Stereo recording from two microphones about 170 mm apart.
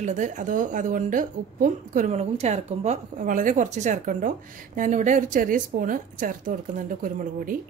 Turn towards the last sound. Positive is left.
turn(degrees=-55)  # may be behind; listen again after turning